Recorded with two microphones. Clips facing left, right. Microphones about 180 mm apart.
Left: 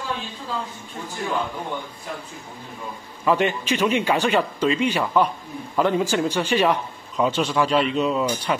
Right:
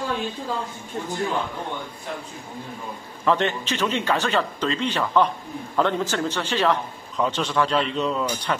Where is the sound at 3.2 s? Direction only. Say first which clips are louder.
Left 1 dB; 10° left (ahead or behind).